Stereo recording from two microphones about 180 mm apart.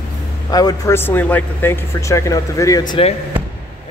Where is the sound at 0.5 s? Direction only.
20° left (ahead or behind).